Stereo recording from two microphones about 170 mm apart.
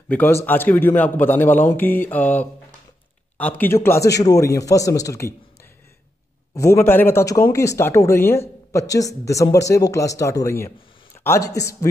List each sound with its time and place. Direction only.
0.1 s a woman's voice: 15° left (ahead or behind)
6.5 s a woman's voice: 15° left (ahead or behind)